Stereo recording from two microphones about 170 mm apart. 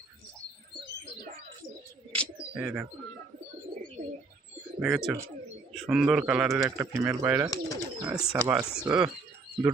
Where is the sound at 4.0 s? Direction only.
50° right (ahead or behind).